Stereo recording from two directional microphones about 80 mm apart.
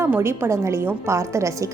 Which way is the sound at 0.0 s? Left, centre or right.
Right.